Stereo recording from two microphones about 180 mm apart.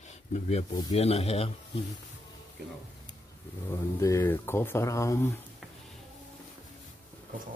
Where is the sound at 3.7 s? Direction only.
15° left (ahead or behind).